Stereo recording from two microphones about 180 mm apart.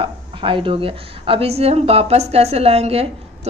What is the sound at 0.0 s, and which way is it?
A woman's voice, 30° right (ahead or behind).